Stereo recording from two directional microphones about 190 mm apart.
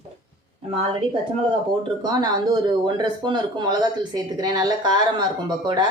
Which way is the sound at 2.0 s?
20° right (ahead or behind).